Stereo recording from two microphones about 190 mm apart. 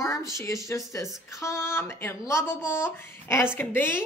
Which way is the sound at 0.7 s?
15° left (ahead or behind).